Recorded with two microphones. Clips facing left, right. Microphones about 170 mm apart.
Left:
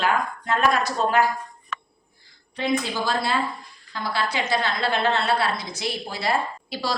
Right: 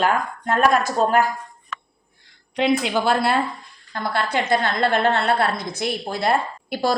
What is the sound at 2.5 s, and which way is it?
A woman's voice, 70° right (ahead or behind).